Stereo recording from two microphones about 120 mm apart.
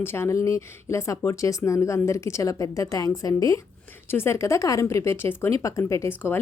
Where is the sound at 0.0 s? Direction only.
20° left (ahead or behind).